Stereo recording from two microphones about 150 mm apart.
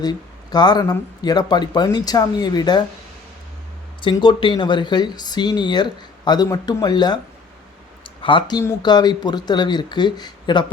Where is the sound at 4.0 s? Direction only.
30° left (ahead or behind).